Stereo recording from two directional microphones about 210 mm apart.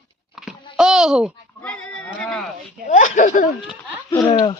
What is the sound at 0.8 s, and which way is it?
Speech, centre (ahead or behind).